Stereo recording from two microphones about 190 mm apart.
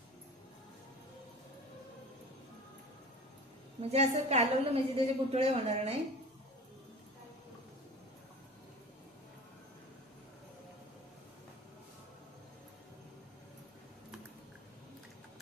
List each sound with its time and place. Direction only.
3.8 s a woman's voice: 35° right (ahead or behind)